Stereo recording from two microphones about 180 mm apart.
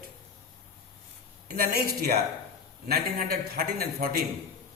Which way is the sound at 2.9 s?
60° right (ahead or behind).